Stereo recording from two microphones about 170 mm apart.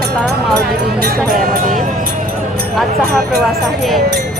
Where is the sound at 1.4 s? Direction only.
55° right (ahead or behind).